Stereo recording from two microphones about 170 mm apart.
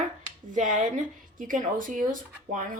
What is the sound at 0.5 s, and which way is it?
A woman's voice, 50° right (ahead or behind).